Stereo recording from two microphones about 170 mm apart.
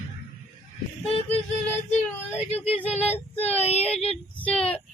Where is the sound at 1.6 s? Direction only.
10° left (ahead or behind).